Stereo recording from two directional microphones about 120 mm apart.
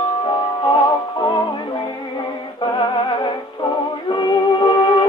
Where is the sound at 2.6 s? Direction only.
40° left (ahead or behind).